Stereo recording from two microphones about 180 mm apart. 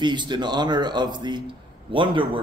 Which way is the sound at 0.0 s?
25° right (ahead or behind).